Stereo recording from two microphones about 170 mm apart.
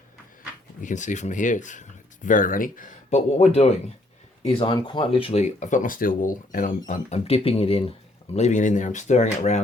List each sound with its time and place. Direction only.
0.8 s speech: 45° left (ahead or behind)
8.4 s speech: 45° left (ahead or behind)